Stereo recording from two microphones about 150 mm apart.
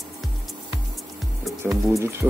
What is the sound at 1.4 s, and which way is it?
Music, centre (ahead or behind).